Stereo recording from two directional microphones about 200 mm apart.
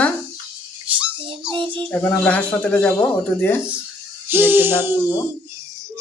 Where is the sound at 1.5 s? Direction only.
25° right (ahead or behind).